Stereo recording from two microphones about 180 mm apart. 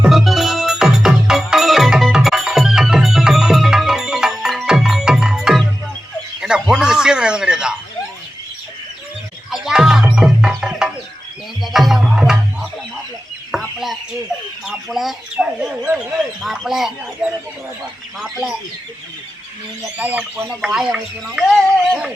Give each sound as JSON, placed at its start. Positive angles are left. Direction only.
{"t": 0.0, "sound": "music", "side_deg": 0}
{"t": 6.4, "sound": "a sound", "side_deg": -5}
{"t": 9.5, "sound": "music", "side_deg": -5}
{"t": 13.5, "sound": "chicken", "side_deg": 0}
{"t": 16.4, "sound": "speech", "side_deg": 0}
{"t": 20.0, "sound": "speech", "side_deg": -5}